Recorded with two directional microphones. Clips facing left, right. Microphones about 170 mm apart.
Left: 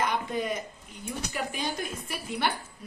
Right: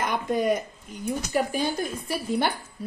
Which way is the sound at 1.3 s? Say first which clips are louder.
Right 8 dB; 35° right (ahead or behind).